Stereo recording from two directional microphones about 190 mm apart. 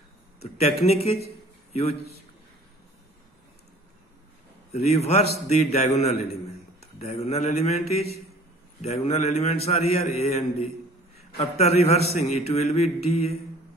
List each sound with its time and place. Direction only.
0.4 s a man's voice: 35° left (ahead or behind)
4.7 s a man's voice: 35° left (ahead or behind)